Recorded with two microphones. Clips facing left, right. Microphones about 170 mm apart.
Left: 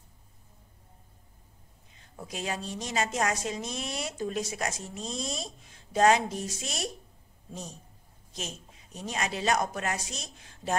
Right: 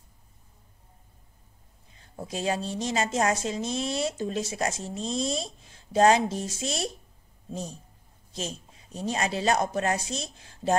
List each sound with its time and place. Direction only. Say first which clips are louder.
2.0 s a woman's voice: right 4 dB; 30° right (ahead or behind)
8.3 s speech: right 4 dB; 30° right (ahead or behind)